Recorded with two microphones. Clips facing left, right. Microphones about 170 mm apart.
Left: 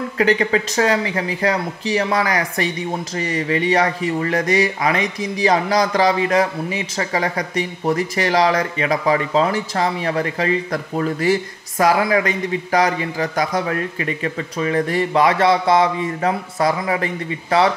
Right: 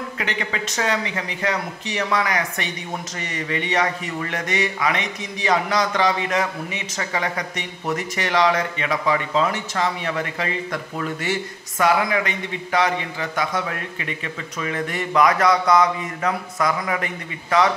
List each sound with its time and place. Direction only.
0.2 s speech: 35° left (ahead or behind)